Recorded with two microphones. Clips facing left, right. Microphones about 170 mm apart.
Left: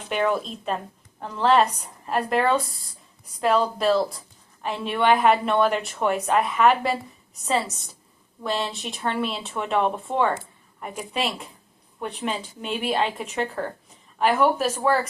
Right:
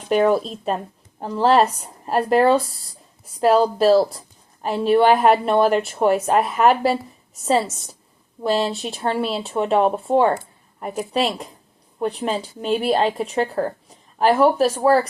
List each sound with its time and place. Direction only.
0.1 s speech: 40° right (ahead or behind)
8.4 s speech: 35° right (ahead or behind)